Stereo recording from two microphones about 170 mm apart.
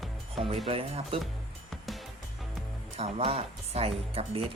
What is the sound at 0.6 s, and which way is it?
Speech, 35° right (ahead or behind).